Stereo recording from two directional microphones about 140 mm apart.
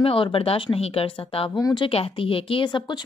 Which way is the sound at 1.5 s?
30° left (ahead or behind).